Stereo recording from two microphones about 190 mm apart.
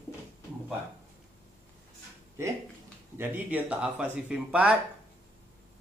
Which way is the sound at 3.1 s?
10° right (ahead or behind).